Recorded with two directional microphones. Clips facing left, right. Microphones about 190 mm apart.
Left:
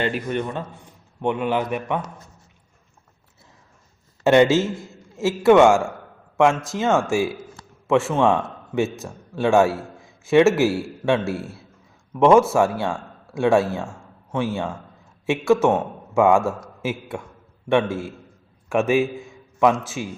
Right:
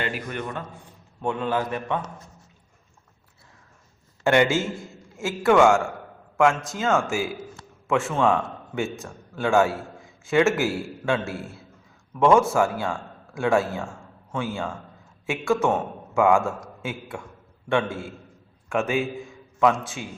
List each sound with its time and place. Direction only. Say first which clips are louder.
0.0 s a man's voice: left 6 dB; 25° left (ahead or behind)
4.2 s a man's voice: left 5 dB; 20° left (ahead or behind)
12.5 s speech: left 3 dB; 25° left (ahead or behind)